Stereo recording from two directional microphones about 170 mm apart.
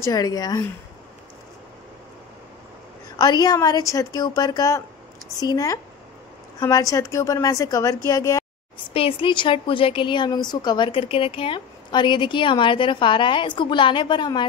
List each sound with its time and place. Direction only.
0.0 s a woman's voice: 20° left (ahead or behind)
3.2 s a woman's voice: 25° left (ahead or behind)
8.1 s a sound: 20° left (ahead or behind)
8.9 s a woman's voice: 30° left (ahead or behind)